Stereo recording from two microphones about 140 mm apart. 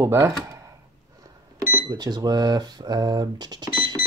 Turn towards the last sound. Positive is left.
turn(degrees=-30)  # may be behind; listen again after turning